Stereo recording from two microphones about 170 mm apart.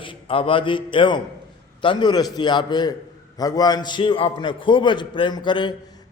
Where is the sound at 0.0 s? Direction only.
30° left (ahead or behind).